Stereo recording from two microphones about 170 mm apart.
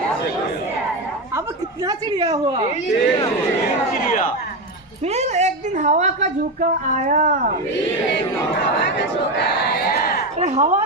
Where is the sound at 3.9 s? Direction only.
55° left (ahead or behind).